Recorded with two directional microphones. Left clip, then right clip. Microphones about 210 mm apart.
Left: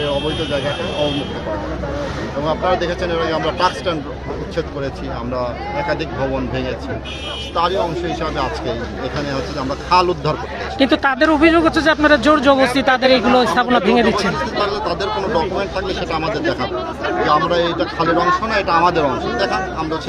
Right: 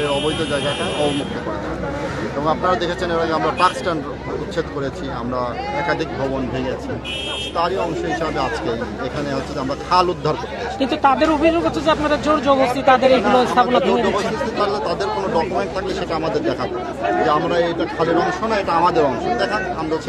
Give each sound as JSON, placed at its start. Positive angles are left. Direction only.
{"t": 2.4, "sound": "speech", "side_deg": -10}
{"t": 8.2, "sound": "a man's voice", "side_deg": 0}
{"t": 9.8, "sound": "a man's voice", "side_deg": 0}
{"t": 10.8, "sound": "speech", "side_deg": 35}
{"t": 14.6, "sound": "a man's voice", "side_deg": 0}